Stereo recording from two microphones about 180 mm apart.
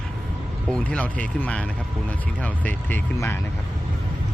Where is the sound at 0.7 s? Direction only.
5° left (ahead or behind).